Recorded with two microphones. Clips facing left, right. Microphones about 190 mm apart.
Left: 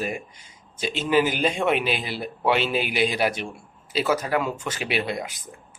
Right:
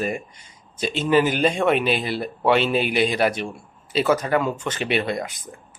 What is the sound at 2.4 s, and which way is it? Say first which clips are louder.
A man's voice: right 3 dB; 5° left (ahead or behind).